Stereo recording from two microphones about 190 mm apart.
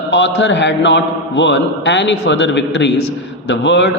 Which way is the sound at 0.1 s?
70° left (ahead or behind).